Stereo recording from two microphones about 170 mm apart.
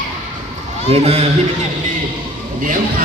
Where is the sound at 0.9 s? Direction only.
35° right (ahead or behind).